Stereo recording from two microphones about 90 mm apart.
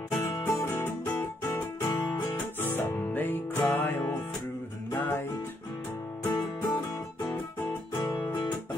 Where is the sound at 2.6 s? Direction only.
20° left (ahead or behind).